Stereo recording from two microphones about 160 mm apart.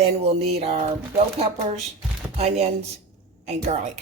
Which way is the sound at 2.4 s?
40° right (ahead or behind).